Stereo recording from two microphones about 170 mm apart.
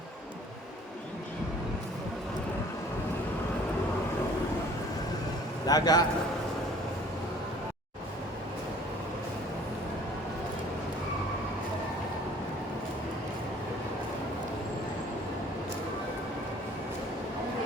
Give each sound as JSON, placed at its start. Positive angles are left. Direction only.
{"t": 5.6, "sound": "a man's voice", "side_deg": 20}